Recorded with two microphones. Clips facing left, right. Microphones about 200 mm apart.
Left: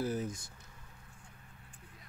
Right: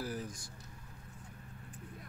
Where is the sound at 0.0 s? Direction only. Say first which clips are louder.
Left 5 dB; 25° left (ahead or behind).